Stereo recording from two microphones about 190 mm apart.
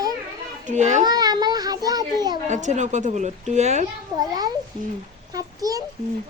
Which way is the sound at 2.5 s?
40° right (ahead or behind).